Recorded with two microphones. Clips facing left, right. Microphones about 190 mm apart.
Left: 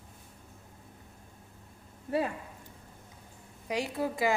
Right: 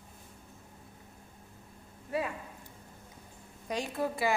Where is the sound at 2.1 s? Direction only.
30° left (ahead or behind).